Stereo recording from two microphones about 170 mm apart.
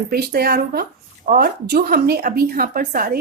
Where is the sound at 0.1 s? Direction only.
65° right (ahead or behind).